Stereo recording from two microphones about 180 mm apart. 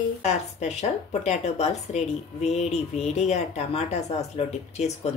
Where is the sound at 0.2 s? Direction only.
40° left (ahead or behind).